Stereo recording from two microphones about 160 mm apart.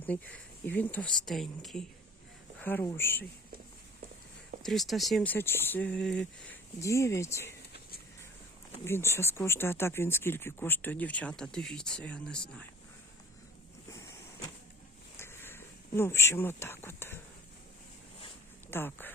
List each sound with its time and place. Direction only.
0.1 s speech: 10° left (ahead or behind)
2.6 s speech: 10° left (ahead or behind)
4.6 s speech: centre (ahead or behind)
5.3 s speech: 15° left (ahead or behind)
7.7 s a sound: 70° left (ahead or behind)
8.8 s speech: 15° left (ahead or behind)
15.2 s speech: 15° left (ahead or behind)
18.7 s speech: 15° left (ahead or behind)